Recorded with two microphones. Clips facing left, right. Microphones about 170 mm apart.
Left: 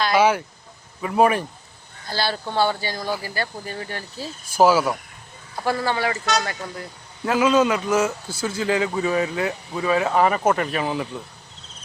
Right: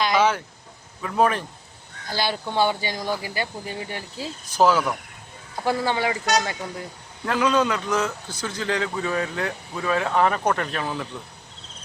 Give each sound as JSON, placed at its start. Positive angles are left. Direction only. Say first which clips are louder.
{"t": 0.1, "sound": "a man's voice", "louder": "left 3 dB", "side_deg": 10}
{"t": 2.0, "sound": "speech", "louder": "left 1 dB", "side_deg": -15}
{"t": 4.5, "sound": "a man's voice", "louder": "left 2 dB", "side_deg": 10}
{"t": 5.6, "sound": "speech", "louder": "even", "side_deg": -15}
{"t": 7.3, "sound": "a man's voice", "louder": "left 3 dB", "side_deg": 5}